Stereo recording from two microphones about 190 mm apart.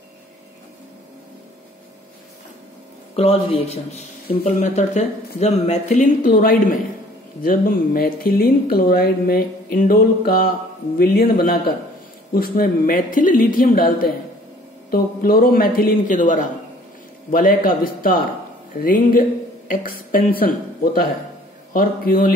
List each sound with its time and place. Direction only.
3.2 s a man's voice: 30° left (ahead or behind); by 22.3 s 50° left (ahead or behind)